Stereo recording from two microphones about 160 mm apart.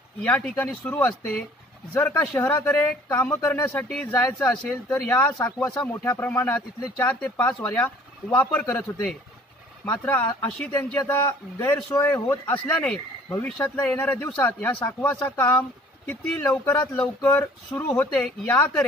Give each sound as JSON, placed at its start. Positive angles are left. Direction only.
{"t": 0.2, "sound": "a man's voice", "side_deg": 5}